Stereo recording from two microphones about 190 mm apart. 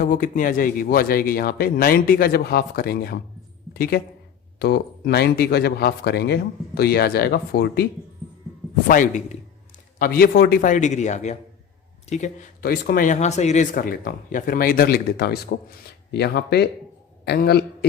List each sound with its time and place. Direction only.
0.0 s speech: 45° left (ahead or behind)
8.9 s a man's voice: 40° left (ahead or behind)
10.0 s a man's voice: 55° left (ahead or behind)
12.7 s speech: 50° left (ahead or behind)